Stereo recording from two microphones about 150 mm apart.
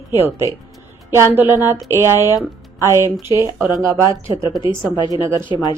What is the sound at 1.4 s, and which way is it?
A woman's voice, 15° right (ahead or behind).